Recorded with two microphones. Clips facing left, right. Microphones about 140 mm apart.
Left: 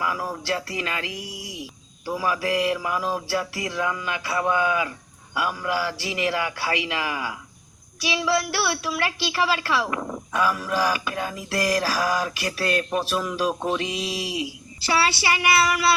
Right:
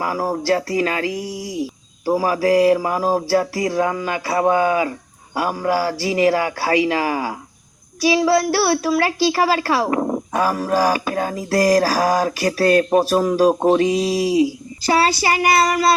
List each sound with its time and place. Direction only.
0.0 s a woman's voice: 40° right (ahead or behind)